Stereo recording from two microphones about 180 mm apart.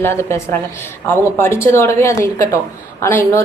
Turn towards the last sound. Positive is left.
turn(degrees=15)  # may be behind; listen again after turning